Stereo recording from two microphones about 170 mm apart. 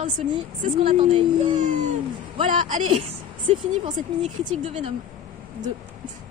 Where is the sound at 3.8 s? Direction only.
35° right (ahead or behind).